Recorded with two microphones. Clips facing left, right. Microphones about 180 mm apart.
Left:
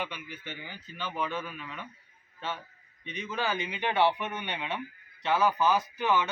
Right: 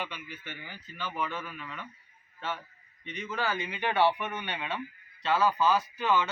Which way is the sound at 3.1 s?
15° left (ahead or behind).